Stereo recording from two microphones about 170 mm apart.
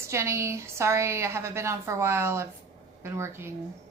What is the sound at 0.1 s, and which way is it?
A woman's voice, 15° right (ahead or behind).